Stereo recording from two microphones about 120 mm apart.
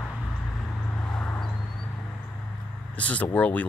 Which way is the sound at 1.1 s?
5° left (ahead or behind).